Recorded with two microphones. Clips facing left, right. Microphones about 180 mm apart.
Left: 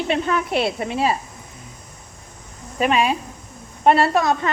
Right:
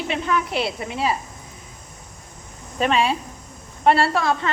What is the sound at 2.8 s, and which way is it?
Speech, 15° left (ahead or behind).